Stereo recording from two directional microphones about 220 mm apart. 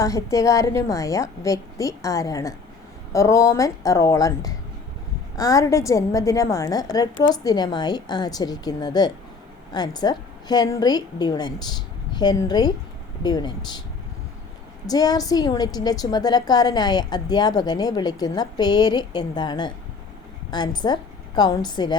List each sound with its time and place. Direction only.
0.0 s a woman's voice: 15° left (ahead or behind)
14.8 s a woman's voice: 15° left (ahead or behind)